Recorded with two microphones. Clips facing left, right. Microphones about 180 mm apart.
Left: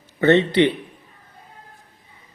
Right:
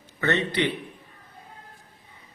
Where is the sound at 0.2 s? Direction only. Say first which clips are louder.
Left 9 dB; 20° left (ahead or behind).